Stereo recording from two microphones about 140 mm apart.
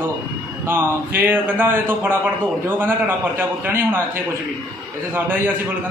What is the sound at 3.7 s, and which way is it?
Speech, 15° right (ahead or behind).